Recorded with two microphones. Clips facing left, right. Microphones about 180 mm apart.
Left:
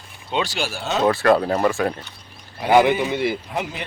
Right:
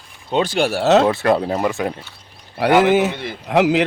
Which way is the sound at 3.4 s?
75° right (ahead or behind).